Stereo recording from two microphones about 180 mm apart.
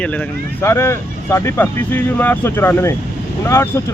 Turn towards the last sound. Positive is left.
turn(degrees=15)  # may be behind; listen again after turning